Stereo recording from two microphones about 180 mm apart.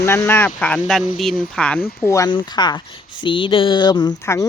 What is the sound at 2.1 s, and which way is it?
Speech, 20° left (ahead or behind).